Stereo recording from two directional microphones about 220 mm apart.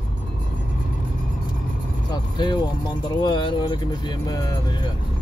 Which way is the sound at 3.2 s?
20° left (ahead or behind).